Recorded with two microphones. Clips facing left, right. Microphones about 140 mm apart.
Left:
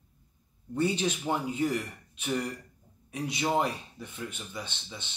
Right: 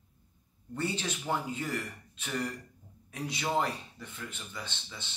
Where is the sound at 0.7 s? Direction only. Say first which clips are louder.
Left 6 dB; 15° left (ahead or behind).